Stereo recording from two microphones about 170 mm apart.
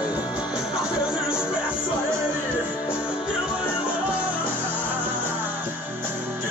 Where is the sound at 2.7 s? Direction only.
5° right (ahead or behind).